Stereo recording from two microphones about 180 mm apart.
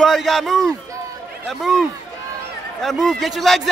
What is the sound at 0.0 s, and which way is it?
A man's voice, centre (ahead or behind).